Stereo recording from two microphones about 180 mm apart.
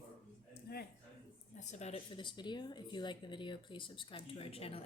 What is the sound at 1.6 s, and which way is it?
Speech, 40° left (ahead or behind).